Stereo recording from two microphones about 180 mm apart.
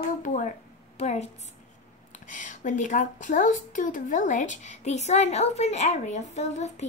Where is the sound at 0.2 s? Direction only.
45° left (ahead or behind).